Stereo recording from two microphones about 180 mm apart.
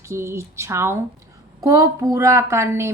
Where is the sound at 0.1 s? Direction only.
15° right (ahead or behind).